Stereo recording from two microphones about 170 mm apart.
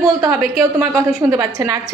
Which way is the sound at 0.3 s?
5° right (ahead or behind).